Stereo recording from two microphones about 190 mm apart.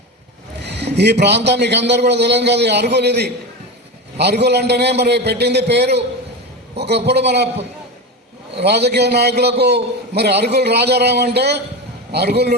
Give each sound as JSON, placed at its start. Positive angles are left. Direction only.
{"t": 0.6, "sound": "a man's voice", "side_deg": -65}
{"t": 8.5, "sound": "a man's voice", "side_deg": -60}